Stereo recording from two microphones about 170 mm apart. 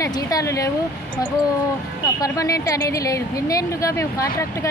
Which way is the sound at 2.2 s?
20° left (ahead or behind).